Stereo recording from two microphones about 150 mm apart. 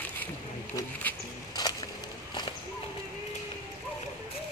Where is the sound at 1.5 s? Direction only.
25° left (ahead or behind).